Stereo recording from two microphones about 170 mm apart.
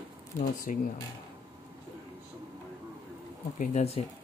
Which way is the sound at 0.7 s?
50° left (ahead or behind).